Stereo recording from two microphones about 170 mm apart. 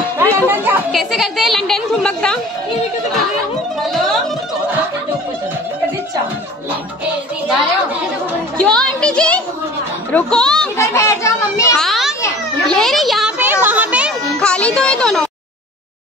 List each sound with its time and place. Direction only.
0.2 s music: 10° right (ahead or behind)
0.9 s a woman's voice: centre (ahead or behind)
3.8 s music: centre (ahead or behind)
8.5 s a child's voice: 5° left (ahead or behind)
10.8 s a child's voice: 15° left (ahead or behind)
11.8 s children playing: centre (ahead or behind)
12.7 s speech: centre (ahead or behind)
13.4 s music: 10° right (ahead or behind)
14.4 s music: 5° left (ahead or behind)